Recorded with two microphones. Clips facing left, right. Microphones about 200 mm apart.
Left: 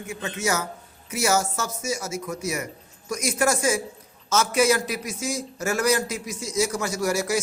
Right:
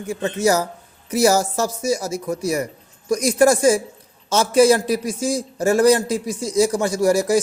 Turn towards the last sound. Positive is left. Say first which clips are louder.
# right 8 dB
turn(degrees=-35)  # may be behind; listen again after turning